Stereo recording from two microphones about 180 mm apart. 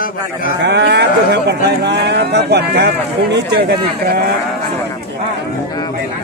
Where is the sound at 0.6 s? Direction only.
70° right (ahead or behind).